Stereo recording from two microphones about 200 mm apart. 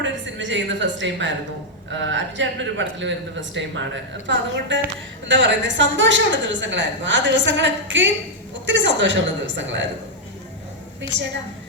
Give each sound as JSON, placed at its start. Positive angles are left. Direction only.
{"t": 0.0, "sound": "a woman's voice", "side_deg": -65}